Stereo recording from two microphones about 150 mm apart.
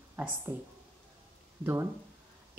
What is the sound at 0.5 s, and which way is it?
Speech, 15° right (ahead or behind).